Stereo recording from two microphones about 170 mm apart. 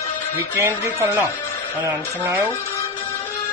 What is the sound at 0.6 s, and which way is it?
Speech, 15° right (ahead or behind).